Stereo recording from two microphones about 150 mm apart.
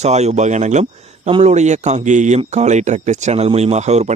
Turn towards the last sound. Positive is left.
turn(degrees=-50)  # may be behind; listen again after turning